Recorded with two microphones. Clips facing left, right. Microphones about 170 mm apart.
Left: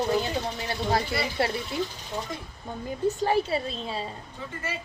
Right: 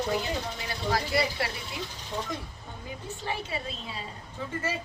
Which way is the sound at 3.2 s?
40° left (ahead or behind).